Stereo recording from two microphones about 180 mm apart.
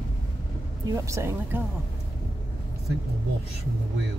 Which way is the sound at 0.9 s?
15° right (ahead or behind).